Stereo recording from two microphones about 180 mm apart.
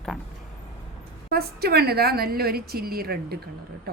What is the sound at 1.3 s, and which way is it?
A woman's voice, 60° right (ahead or behind).